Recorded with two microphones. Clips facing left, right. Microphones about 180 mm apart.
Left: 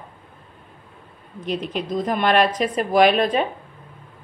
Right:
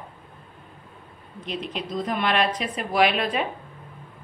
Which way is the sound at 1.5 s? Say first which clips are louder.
Left 5 dB; 45° left (ahead or behind).